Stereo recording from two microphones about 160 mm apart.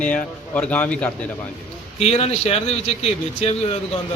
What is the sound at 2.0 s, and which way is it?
Speech, 40° left (ahead or behind).